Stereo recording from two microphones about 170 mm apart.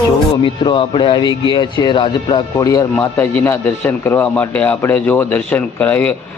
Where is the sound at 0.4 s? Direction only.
30° left (ahead or behind).